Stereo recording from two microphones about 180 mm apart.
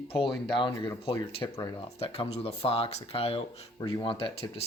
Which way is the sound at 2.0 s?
35° left (ahead or behind).